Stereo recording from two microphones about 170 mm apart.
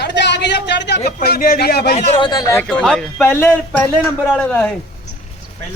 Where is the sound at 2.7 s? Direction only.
5° left (ahead or behind).